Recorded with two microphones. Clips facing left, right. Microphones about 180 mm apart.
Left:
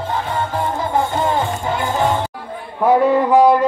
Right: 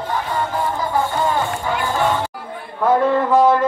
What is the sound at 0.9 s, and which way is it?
Music, 20° left (ahead or behind).